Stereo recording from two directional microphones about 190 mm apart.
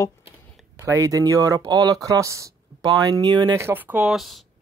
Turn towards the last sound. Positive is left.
turn(degrees=0)  # may be behind; listen again after turning